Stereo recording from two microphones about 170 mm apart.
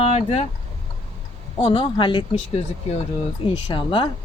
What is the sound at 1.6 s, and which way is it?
Speech, 30° left (ahead or behind).